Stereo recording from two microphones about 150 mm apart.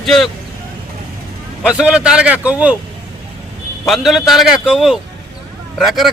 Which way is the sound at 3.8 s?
Centre (ahead or behind).